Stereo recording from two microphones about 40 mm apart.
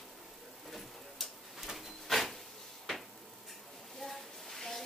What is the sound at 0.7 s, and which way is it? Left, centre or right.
Tick-tock, centre.